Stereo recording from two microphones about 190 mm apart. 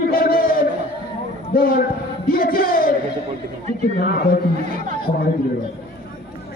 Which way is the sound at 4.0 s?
50° left (ahead or behind).